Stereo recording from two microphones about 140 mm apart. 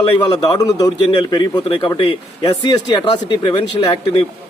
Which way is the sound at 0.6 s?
25° left (ahead or behind).